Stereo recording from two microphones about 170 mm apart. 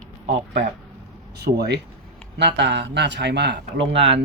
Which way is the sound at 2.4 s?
90° right.